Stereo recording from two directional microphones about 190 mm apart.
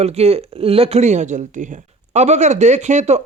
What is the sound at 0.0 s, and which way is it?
Speech, 35° right (ahead or behind).